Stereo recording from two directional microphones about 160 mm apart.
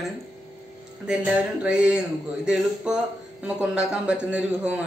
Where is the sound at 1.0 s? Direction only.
5° right (ahead or behind).